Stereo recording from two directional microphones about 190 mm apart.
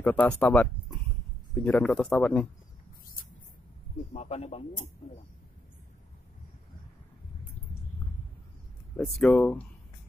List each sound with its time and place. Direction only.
0.0 s speech: 5° left (ahead or behind)
4.1 s speech: 35° left (ahead or behind)
8.9 s speech: centre (ahead or behind)